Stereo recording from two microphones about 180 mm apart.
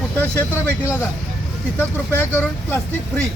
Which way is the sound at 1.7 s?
10° left (ahead or behind).